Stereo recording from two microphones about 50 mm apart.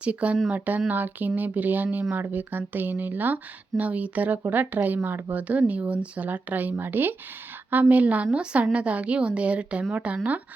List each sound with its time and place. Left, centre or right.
0.0 s a woman's voice: right